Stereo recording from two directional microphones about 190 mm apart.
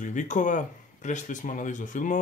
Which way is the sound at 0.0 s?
40° left (ahead or behind).